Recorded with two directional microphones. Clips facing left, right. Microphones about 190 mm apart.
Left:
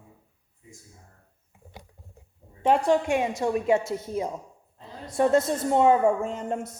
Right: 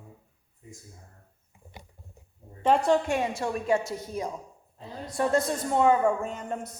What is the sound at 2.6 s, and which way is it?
A woman's voice, 10° left (ahead or behind).